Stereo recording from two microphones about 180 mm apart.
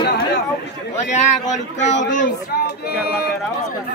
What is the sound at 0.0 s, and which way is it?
Chatter, 65° left (ahead or behind).